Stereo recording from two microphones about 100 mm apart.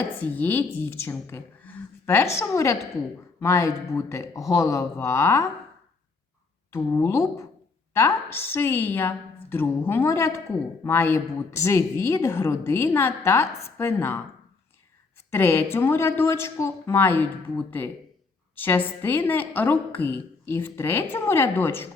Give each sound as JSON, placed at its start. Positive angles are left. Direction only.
{"t": 0.2, "sound": "a woman's voice", "side_deg": 20}
{"t": 6.7, "sound": "a woman's voice", "side_deg": 25}
{"t": 15.3, "sound": "a woman's voice", "side_deg": 25}